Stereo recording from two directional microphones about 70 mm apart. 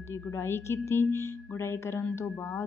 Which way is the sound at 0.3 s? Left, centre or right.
Left.